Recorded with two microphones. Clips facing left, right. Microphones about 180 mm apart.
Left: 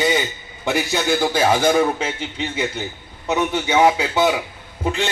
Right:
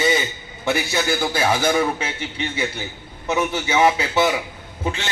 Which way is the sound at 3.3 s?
5° right (ahead or behind).